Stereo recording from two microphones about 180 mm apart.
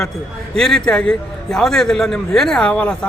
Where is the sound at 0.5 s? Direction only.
5° left (ahead or behind).